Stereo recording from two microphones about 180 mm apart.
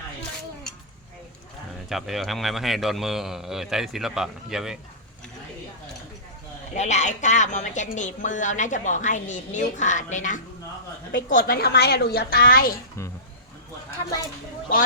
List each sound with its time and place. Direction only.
1.9 s a man's voice: centre (ahead or behind)
6.7 s a woman's voice: 40° left (ahead or behind)